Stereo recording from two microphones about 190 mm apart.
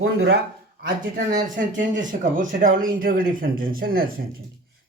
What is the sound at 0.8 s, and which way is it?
Speech, 45° right (ahead or behind).